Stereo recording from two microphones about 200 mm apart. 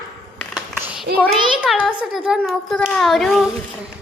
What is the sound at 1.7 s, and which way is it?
A woman's voice, centre (ahead or behind).